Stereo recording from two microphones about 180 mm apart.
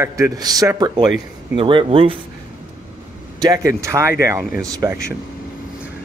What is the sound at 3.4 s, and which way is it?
A man's voice, 20° right (ahead or behind).